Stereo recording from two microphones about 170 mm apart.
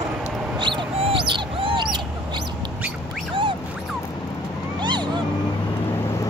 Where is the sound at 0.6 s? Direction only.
30° right (ahead or behind).